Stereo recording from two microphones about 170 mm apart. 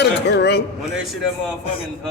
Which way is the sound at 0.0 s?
90° left.